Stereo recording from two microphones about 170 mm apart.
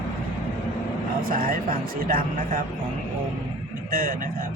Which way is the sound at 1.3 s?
60° right (ahead or behind).